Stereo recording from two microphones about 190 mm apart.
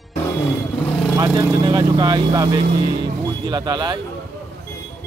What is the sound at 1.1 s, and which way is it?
Speech, 20° right (ahead or behind).